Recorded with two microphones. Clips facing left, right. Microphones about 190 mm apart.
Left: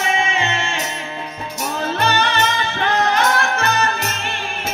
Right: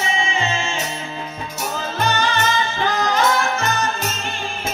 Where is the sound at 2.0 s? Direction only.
65° left (ahead or behind).